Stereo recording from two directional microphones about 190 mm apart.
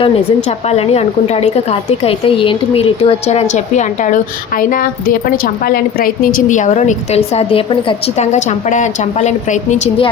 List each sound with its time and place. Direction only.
0.7 s a woman's voice: 35° left (ahead or behind)